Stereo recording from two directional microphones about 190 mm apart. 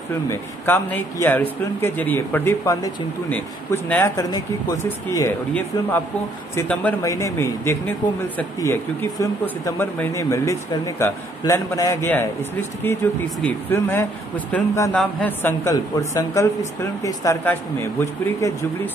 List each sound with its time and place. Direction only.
0.3 s speech: 10° left (ahead or behind)
9.2 s speech: 15° left (ahead or behind)